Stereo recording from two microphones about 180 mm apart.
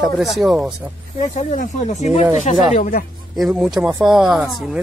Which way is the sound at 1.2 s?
40° left (ahead or behind).